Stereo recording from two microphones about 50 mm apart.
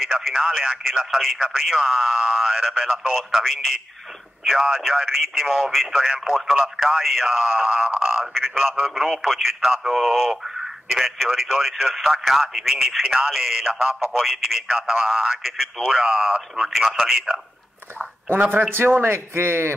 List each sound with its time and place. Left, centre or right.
0.3 s speech: centre
0.8 s speech: centre
2.0 s speech: centre
4.7 s speech: centre
7.6 s speech: centre
8.3 s speech: centre
14.1 s speech: centre
16.7 s speech: centre
18.3 s a man's voice: right